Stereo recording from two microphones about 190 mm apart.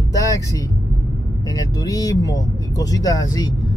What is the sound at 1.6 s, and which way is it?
Speech, 20° left (ahead or behind).